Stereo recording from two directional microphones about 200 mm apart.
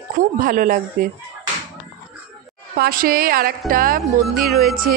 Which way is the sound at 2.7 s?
50° right (ahead or behind).